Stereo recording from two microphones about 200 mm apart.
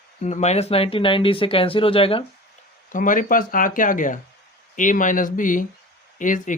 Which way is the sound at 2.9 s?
40° left (ahead or behind).